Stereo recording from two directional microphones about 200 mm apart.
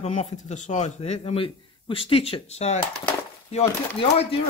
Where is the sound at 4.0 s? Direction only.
30° left (ahead or behind).